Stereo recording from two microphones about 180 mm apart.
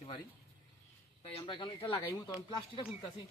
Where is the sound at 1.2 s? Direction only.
30° left (ahead or behind).